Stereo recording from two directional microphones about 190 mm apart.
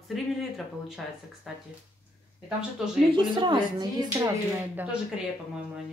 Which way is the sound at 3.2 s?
25° right (ahead or behind).